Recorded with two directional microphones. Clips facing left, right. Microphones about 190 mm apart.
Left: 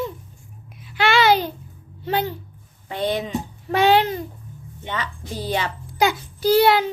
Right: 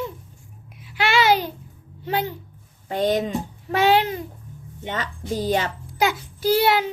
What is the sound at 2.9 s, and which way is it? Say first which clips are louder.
Speech: right 3 dB; 45° right (ahead or behind).